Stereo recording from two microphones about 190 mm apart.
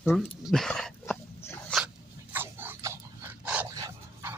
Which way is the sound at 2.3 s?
10° right (ahead or behind).